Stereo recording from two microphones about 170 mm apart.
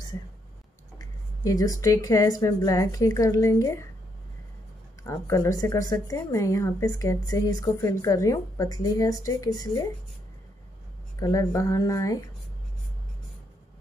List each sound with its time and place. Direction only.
0.9 s a woman's voice: 20° left (ahead or behind)
5.0 s a woman's voice: 20° left (ahead or behind)
11.1 s a woman's voice: 20° left (ahead or behind)